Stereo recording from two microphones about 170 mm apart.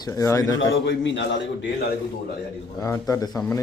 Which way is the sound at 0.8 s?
90° left.